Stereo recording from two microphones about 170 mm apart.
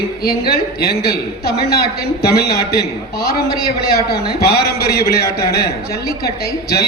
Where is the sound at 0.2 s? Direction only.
65° left (ahead or behind).